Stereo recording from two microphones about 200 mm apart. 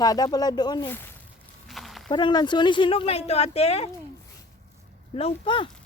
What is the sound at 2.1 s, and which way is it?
Speech, 20° left (ahead or behind).